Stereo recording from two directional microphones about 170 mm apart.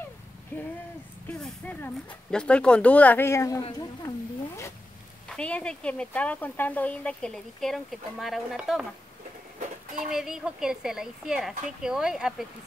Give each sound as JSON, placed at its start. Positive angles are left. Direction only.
{"t": 0.5, "sound": "a sound", "side_deg": 10}
{"t": 1.2, "sound": "vehicle", "side_deg": 5}
{"t": 2.3, "sound": "speech", "side_deg": 5}
{"t": 5.3, "sound": "speech", "side_deg": 5}
{"t": 9.9, "sound": "speech", "side_deg": -5}